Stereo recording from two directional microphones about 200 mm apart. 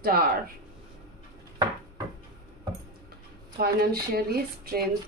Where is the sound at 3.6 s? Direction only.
50° right (ahead or behind).